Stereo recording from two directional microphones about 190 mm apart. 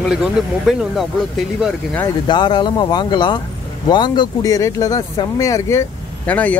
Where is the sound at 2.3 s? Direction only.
25° left (ahead or behind).